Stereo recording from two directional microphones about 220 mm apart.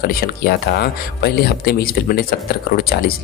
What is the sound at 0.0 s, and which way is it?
Speech, 45° left (ahead or behind).